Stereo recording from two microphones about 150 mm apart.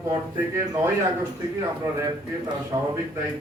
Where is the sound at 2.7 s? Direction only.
25° right (ahead or behind).